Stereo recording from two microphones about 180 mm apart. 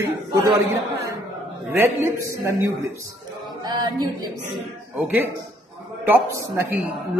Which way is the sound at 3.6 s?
25° right (ahead or behind).